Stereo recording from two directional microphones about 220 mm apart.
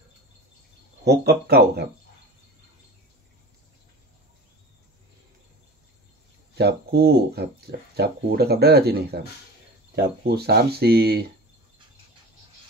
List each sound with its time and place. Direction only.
1.0 s speech: 50° right (ahead or behind)
6.5 s speech: 45° right (ahead or behind)